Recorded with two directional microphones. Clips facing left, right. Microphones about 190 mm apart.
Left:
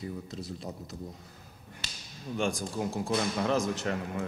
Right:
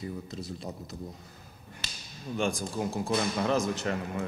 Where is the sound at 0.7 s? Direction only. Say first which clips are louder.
Right 1 dB; 10° right (ahead or behind).